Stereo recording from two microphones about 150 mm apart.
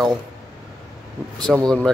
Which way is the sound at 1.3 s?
25° right (ahead or behind).